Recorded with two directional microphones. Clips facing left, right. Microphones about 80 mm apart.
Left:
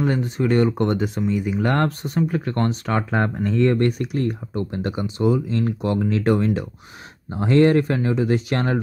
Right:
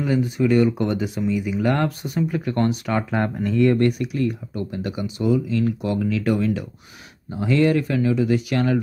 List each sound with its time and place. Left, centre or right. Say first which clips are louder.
0.0 s speech: right 1 dB; left
1.6 s speech: even; left
2.1 s speech: even; left
4.0 s speech: even; left